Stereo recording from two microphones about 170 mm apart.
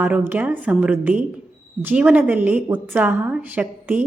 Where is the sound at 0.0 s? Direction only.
10° right (ahead or behind).